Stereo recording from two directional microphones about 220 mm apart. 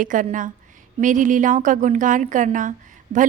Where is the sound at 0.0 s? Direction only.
35° right (ahead or behind).